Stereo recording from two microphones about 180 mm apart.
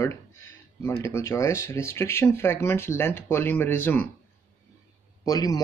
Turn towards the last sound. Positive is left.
turn(degrees=20)  # may be behind; listen again after turning